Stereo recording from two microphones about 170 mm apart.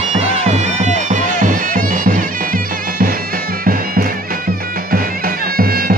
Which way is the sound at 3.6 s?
55° right (ahead or behind).